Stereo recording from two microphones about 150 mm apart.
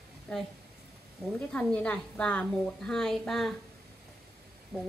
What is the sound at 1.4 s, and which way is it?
Speech, 10° left (ahead or behind).